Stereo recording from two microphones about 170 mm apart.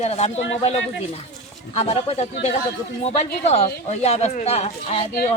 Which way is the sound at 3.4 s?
40° left (ahead or behind).